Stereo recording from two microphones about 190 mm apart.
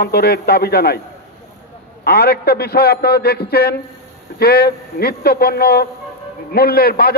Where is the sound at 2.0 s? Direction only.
55° left (ahead or behind).